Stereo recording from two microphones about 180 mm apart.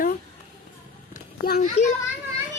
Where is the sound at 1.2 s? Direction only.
50° left (ahead or behind).